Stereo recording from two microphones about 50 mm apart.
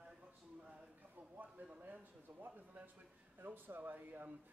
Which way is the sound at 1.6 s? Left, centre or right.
Right.